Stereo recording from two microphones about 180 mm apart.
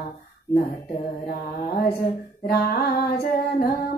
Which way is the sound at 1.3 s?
55° left (ahead or behind).